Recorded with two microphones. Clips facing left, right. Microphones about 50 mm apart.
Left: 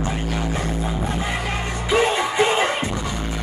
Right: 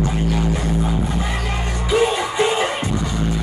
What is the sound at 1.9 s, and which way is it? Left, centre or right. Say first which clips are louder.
Music: right 1 dB; left.